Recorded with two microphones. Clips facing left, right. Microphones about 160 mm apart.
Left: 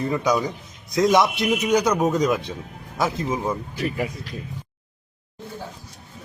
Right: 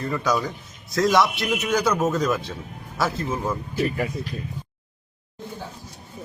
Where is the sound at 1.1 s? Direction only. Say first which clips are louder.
Left 2 dB; 20° left (ahead or behind).